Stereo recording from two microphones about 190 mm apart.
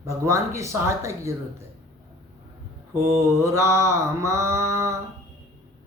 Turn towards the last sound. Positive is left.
turn(degrees=-15)  # may be behind; listen again after turning